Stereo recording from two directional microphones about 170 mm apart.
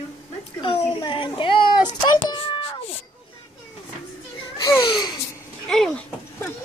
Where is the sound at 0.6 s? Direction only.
30° left (ahead or behind).